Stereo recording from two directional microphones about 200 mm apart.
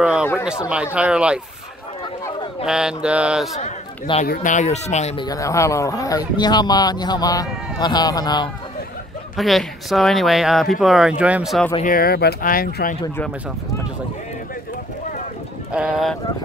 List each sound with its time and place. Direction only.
0.0 s speech: 5° right (ahead or behind)
2.6 s speech: 5° right (ahead or behind)
3.6 s a man's voice: 35° left (ahead or behind)
5.2 s speech: 15° left (ahead or behind)
9.4 s speech: centre (ahead or behind)
11.8 s speech: 45° left (ahead or behind)
15.7 s speech: 5° right (ahead or behind)